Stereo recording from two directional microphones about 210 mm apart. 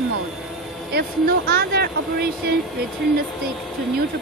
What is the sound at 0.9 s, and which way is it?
Speech, 50° right (ahead or behind).